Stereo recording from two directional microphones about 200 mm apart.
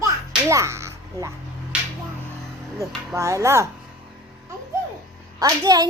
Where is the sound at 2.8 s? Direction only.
15° right (ahead or behind).